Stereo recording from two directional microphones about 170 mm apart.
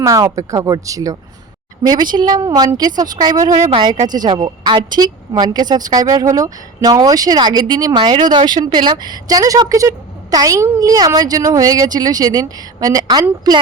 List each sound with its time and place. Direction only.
0.0 s a woman's voice: 20° right (ahead or behind)